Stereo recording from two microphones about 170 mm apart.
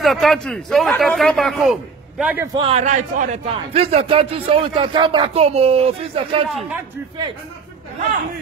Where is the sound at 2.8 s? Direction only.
45° right (ahead or behind).